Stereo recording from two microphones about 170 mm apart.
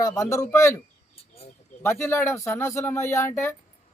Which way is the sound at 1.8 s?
15° left (ahead or behind).